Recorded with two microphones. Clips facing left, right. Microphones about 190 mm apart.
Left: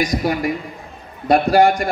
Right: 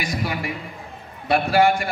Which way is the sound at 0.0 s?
40° left (ahead or behind).